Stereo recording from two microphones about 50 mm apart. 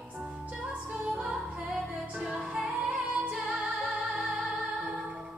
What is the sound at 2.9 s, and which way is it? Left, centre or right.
Music, right.